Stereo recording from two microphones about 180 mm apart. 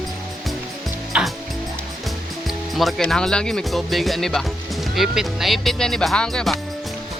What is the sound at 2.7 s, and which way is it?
Speech, centre (ahead or behind).